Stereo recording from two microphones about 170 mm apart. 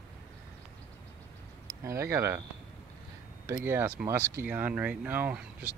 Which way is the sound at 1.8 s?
15° right (ahead or behind).